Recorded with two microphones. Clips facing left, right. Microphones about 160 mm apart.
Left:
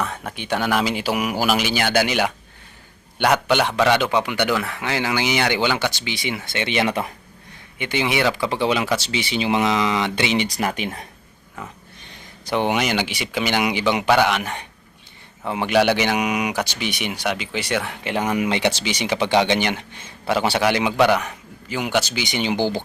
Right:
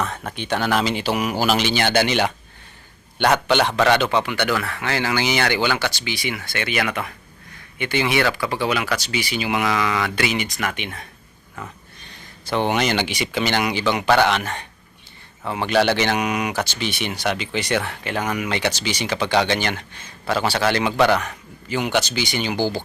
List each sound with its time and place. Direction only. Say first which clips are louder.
0.0 s a man's voice: right 1 dB; 10° left (ahead or behind); by 7.1 s 30° left (ahead or behind)
7.8 s speech: right 1 dB; 15° left (ahead or behind); by 11.0 s 35° left (ahead or behind)
12.5 s a man's voice: even; 15° left (ahead or behind)
18.0 s speech: left 3 dB; 20° left (ahead or behind)